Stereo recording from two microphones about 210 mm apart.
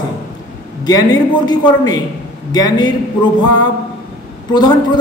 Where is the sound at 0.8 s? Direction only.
20° left (ahead or behind).